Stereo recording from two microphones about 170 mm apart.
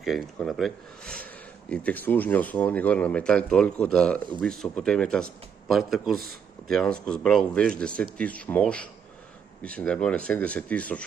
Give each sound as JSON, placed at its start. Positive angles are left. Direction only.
{"t": 0.0, "sound": "speech", "side_deg": 0}